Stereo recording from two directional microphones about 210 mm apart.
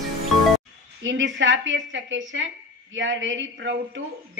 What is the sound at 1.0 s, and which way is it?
Speech, 60° right (ahead or behind).